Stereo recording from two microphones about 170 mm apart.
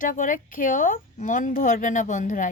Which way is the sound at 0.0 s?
50° left (ahead or behind).